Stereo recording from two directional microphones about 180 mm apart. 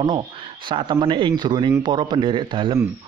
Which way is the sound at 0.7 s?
25° right (ahead or behind).